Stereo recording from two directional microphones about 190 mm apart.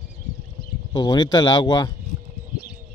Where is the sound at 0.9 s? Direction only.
20° left (ahead or behind).